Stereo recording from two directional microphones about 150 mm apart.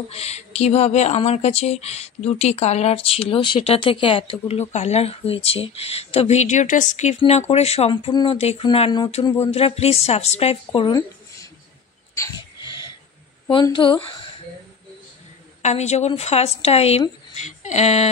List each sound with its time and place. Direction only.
0.1 s speech: 45° left (ahead or behind)
8.1 s speech: 30° left (ahead or behind)
8.4 s speech: 45° left (ahead or behind)
12.5 s a sound: 30° left (ahead or behind)
13.5 s speech: 35° left (ahead or behind)
15.6 s speech: 50° left (ahead or behind)